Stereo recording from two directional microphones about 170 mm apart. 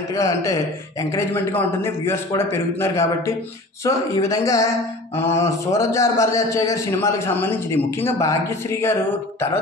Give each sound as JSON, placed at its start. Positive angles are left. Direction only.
{"t": 0.1, "sound": "a man's voice", "side_deg": 20}